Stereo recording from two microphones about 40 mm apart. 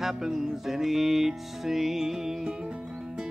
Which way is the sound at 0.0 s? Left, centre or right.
Centre.